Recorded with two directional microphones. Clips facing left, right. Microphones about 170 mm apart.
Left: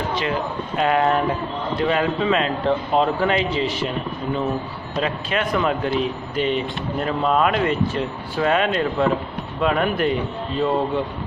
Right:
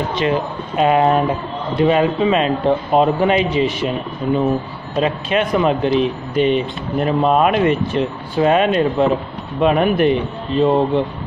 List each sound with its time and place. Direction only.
0.1 s speech: 20° right (ahead or behind)
4.9 s speech: 20° right (ahead or behind)